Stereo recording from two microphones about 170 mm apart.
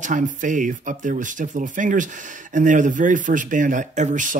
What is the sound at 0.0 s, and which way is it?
Speech, 50° right (ahead or behind).